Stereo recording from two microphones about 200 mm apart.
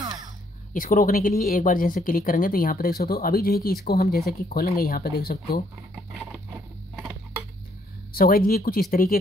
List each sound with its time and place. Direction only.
0.7 s speech: 45° left (ahead or behind)
8.1 s speech: 45° left (ahead or behind)